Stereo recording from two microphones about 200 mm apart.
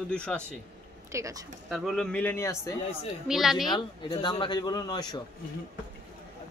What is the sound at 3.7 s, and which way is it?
Speech, 25° left (ahead or behind).